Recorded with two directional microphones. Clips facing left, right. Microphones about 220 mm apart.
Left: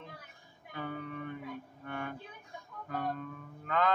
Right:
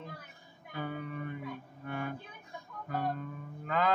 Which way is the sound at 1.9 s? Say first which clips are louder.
Right 2 dB; 5° right (ahead or behind).